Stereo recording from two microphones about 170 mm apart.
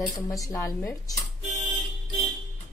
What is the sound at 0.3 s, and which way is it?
Speech, 20° left (ahead or behind).